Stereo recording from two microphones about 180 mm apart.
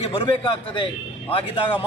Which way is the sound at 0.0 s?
30° left (ahead or behind).